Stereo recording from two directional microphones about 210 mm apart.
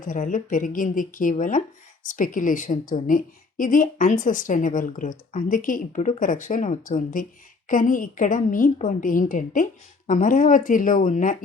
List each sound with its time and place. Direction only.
0.0 s a woman's voice: 40° left (ahead or behind)